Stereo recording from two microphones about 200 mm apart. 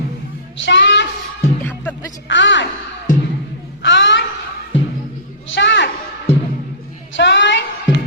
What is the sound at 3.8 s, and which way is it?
Music, 65° left (ahead or behind).